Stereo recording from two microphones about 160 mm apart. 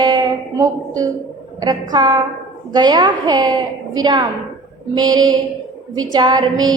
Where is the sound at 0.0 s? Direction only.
25° right (ahead or behind).